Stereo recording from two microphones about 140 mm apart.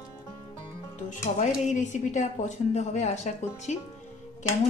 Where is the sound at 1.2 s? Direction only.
60° left (ahead or behind).